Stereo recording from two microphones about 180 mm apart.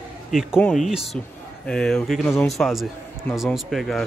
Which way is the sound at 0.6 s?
Centre (ahead or behind).